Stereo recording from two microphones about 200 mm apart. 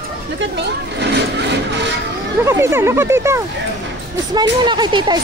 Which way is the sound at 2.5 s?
10° right (ahead or behind).